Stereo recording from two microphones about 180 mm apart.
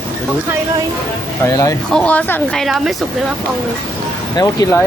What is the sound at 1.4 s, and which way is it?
Speech, 20° left (ahead or behind).